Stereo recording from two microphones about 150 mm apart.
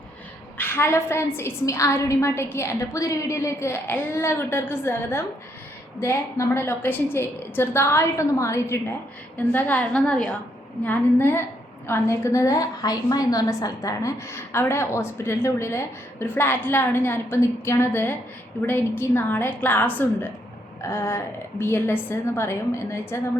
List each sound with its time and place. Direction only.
0.6 s a woman's voice: 15° left (ahead or behind)